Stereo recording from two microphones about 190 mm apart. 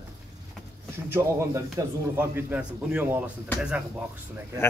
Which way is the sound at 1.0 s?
10° right (ahead or behind).